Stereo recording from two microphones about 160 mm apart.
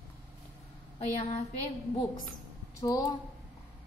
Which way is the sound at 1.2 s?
40° left (ahead or behind).